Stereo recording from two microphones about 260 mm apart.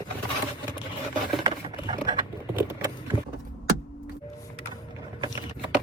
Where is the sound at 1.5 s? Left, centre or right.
Centre.